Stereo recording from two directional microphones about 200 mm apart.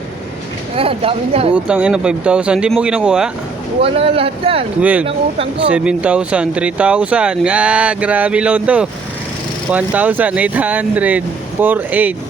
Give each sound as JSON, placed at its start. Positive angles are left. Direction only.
{"t": 0.8, "sound": "speech", "side_deg": -30}
{"t": 1.5, "sound": "speech", "side_deg": -5}
{"t": 3.8, "sound": "speech", "side_deg": -30}
{"t": 4.8, "sound": "speech", "side_deg": -5}